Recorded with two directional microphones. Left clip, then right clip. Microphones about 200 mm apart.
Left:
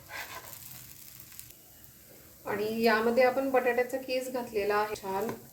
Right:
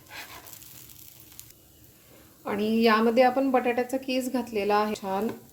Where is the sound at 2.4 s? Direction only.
45° right (ahead or behind).